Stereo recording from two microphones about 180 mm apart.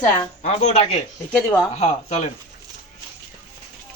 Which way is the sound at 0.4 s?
35° left (ahead or behind).